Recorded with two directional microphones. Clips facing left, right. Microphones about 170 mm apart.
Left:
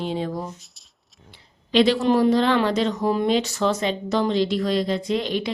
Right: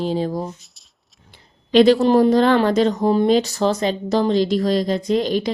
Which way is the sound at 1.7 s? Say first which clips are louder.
Right 5 dB; 45° right (ahead or behind).